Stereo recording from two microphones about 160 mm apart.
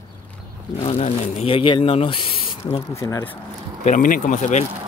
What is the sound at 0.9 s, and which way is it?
Speech, 40° left (ahead or behind).